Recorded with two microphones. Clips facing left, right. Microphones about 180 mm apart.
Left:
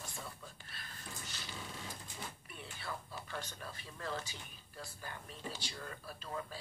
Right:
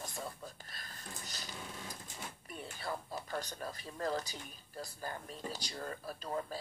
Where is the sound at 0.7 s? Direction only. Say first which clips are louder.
Right 1 dB; 40° right (ahead or behind).